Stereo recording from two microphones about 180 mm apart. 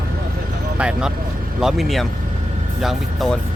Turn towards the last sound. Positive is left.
turn(degrees=0)  # may be behind; listen again after turning